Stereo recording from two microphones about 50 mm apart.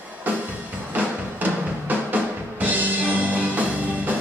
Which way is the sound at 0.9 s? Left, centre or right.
Right.